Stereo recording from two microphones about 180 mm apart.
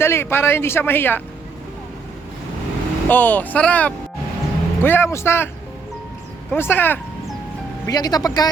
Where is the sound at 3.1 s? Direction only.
10° left (ahead or behind).